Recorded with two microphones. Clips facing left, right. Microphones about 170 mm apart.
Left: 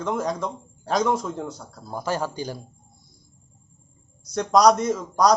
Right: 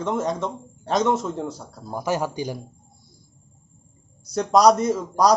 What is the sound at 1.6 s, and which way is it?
Speech, 15° right (ahead or behind).